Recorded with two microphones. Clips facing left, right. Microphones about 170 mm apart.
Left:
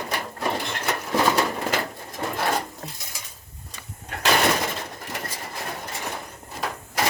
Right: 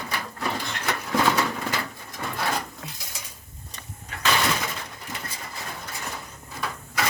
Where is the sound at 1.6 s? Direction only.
30° left (ahead or behind).